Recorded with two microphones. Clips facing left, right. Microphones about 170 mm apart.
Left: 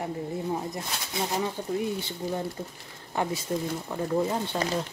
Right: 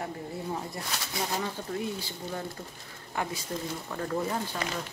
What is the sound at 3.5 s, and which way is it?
Speech, 20° left (ahead or behind).